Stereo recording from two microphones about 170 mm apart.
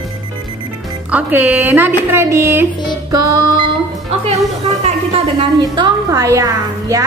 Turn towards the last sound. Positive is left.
turn(degrees=-20)  # may be behind; listen again after turning